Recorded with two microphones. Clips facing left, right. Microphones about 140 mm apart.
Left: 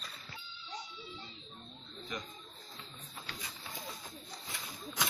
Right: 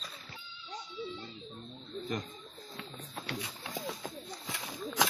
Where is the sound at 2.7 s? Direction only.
80° right.